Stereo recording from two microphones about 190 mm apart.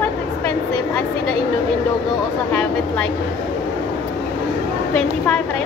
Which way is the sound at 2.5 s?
10° left (ahead or behind).